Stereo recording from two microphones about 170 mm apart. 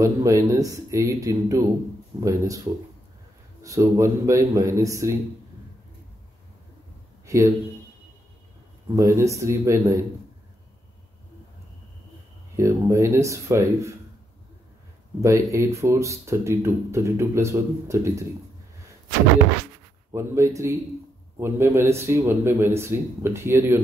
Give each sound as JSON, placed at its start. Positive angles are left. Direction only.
{"t": 0.0, "sound": "a man's voice", "side_deg": -20}
{"t": 7.2, "sound": "a man's voice", "side_deg": -15}
{"t": 8.9, "sound": "speech", "side_deg": -20}
{"t": 12.5, "sound": "speech", "side_deg": -15}
{"t": 15.5, "sound": "speech", "side_deg": -15}
{"t": 20.1, "sound": "speech", "side_deg": -15}